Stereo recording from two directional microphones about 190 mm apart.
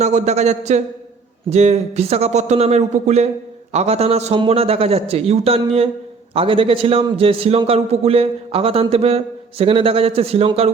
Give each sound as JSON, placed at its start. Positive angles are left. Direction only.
{"t": 0.0, "sound": "a man's voice", "side_deg": -35}